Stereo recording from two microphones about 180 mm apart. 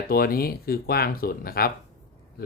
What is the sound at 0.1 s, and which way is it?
Speech, 55° left (ahead or behind).